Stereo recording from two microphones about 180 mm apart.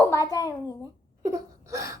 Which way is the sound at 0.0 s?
15° left (ahead or behind).